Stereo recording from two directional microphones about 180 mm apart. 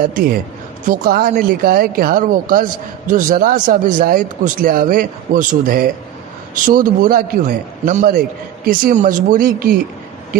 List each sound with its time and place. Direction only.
0.0 s a man's voice: 55° right (ahead or behind)